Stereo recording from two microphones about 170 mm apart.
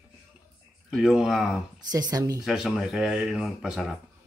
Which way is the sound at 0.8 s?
Centre (ahead or behind).